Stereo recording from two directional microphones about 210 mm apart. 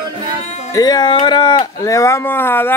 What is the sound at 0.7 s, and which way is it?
Speech, 15° left (ahead or behind).